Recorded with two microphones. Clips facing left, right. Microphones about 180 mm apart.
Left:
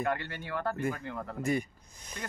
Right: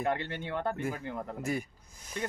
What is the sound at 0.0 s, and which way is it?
Speech, 20° right (ahead or behind).